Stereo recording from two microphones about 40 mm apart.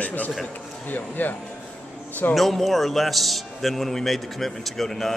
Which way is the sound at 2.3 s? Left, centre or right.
Centre.